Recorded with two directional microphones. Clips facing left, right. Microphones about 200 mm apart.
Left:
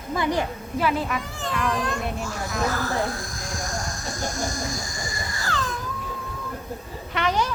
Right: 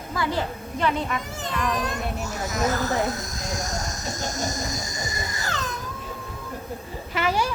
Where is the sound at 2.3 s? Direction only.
20° right (ahead or behind).